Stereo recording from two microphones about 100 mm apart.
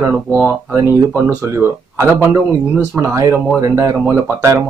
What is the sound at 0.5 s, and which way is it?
A man's voice, 25° right (ahead or behind).